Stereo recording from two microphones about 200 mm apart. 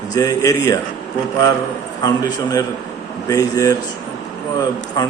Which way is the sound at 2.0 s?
15° left (ahead or behind).